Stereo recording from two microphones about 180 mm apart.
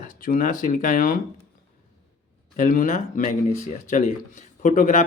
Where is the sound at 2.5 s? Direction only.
45° left (ahead or behind).